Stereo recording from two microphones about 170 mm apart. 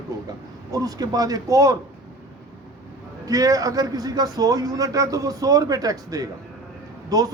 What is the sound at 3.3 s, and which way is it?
A man's voice, 20° right (ahead or behind).